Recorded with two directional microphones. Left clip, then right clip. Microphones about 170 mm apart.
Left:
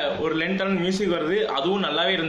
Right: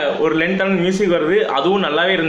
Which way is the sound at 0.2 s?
5° left (ahead or behind).